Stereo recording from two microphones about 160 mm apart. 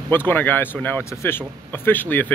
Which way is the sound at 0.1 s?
10° left (ahead or behind).